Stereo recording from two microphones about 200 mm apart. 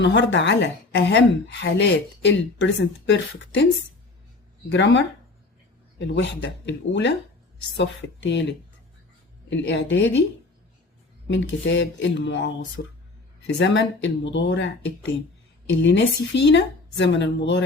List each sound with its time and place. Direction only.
0.0 s speech: 60° left (ahead or behind)
4.7 s speech: 60° left (ahead or behind)
11.3 s speech: 65° left (ahead or behind)